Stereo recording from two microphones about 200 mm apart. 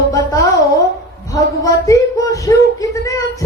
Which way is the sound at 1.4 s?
15° left (ahead or behind).